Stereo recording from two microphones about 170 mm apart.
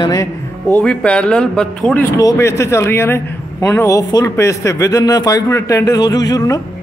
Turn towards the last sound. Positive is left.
turn(degrees=20)  # may be behind; listen again after turning